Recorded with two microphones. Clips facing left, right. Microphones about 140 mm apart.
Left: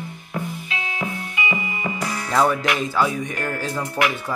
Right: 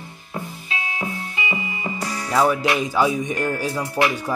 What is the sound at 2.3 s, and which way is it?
Speech, 5° right (ahead or behind).